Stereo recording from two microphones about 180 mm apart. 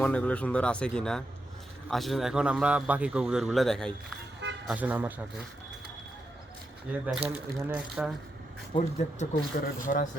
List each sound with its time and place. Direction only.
0.0 s a man's voice: 5° left (ahead or behind)
4.7 s speech: 10° right (ahead or behind)
6.9 s a man's voice: 10° right (ahead or behind)
8.7 s speech: 30° left (ahead or behind)
9.1 s speech: 50° left (ahead or behind)